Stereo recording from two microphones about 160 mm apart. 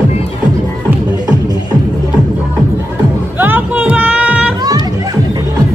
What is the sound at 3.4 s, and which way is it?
Music, 10° right (ahead or behind).